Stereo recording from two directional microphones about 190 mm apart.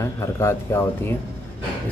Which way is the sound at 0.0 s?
15° left (ahead or behind).